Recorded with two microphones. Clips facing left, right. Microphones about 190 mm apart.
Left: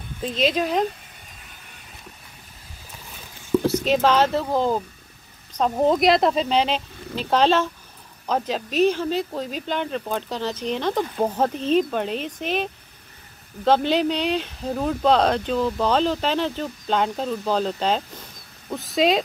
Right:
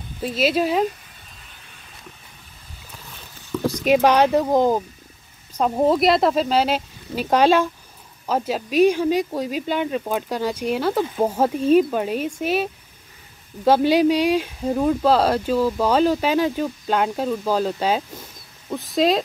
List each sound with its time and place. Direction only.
0.2 s speech: 5° right (ahead or behind)
3.6 s speech: 10° right (ahead or behind)
13.7 s speech: 10° right (ahead or behind)